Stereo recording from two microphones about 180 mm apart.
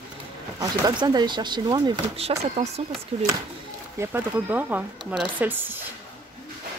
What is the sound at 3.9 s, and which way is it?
Speech, 10° right (ahead or behind).